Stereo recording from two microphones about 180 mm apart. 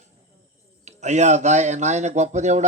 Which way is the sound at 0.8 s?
40° right (ahead or behind).